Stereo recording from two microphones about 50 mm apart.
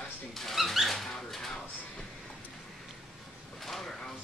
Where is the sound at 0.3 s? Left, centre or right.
Centre.